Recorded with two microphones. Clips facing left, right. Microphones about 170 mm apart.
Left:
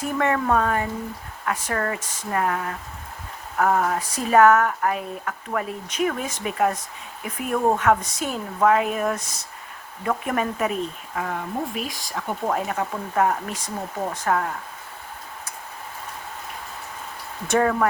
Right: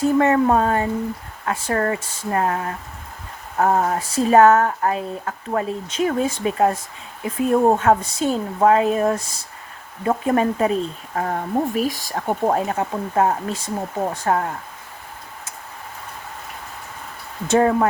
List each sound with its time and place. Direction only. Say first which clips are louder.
0.0 s speech: right 7 dB; 30° right (ahead or behind)
17.5 s speech: right 4 dB; 30° right (ahead or behind)